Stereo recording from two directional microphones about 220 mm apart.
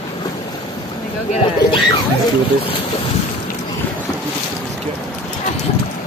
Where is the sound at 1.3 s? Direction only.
25° left (ahead or behind).